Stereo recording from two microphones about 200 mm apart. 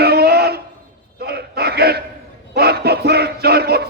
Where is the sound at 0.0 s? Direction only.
50° right (ahead or behind).